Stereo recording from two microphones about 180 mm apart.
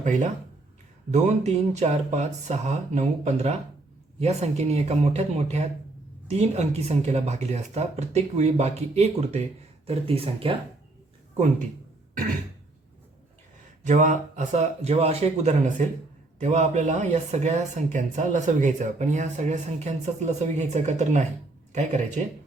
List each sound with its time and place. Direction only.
0.0 s speech: 45° right (ahead or behind)
13.8 s speech: 45° right (ahead or behind)